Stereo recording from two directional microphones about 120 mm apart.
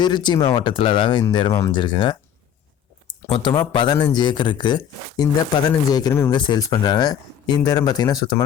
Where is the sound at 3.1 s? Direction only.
45° left (ahead or behind).